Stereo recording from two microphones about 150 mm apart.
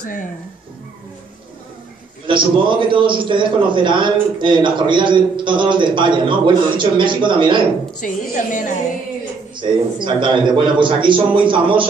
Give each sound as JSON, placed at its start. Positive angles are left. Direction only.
{"t": 2.2, "sound": "a man's voice", "side_deg": -35}
{"t": 8.0, "sound": "a woman's voice", "side_deg": 60}
{"t": 9.6, "sound": "a man's voice", "side_deg": -30}